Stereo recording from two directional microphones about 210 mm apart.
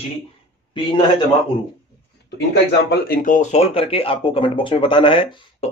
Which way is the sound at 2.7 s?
45° left (ahead or behind).